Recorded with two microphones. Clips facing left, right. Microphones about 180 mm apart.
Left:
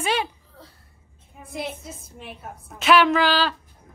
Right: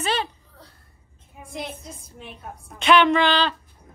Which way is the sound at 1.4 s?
5° left (ahead or behind).